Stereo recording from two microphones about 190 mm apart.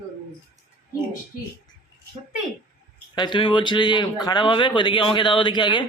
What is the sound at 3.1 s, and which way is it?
A man's voice, 25° left (ahead or behind).